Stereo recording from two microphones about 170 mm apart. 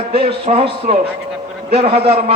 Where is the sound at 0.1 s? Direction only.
35° right (ahead or behind).